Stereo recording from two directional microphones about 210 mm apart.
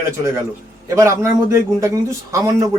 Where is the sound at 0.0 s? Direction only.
15° right (ahead or behind).